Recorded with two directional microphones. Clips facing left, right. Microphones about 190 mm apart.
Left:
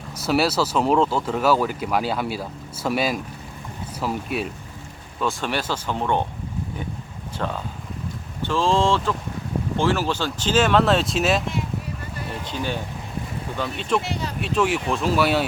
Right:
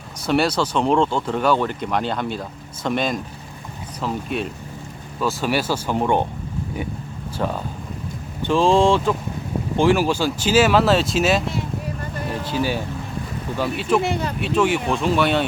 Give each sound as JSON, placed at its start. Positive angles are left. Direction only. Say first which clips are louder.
{"t": 0.3, "sound": "speech", "louder": "right 1 dB", "side_deg": 5}
{"t": 5.2, "sound": "speech", "louder": "right 3 dB", "side_deg": -5}
{"t": 7.3, "sound": "speech", "louder": "right 3 dB", "side_deg": -10}
{"t": 12.5, "sound": "speech", "louder": "right 5 dB", "side_deg": -5}
{"t": 14.0, "sound": "speech", "louder": "right 6 dB", "side_deg": -55}
{"t": 14.4, "sound": "speech", "louder": "right 2 dB", "side_deg": 0}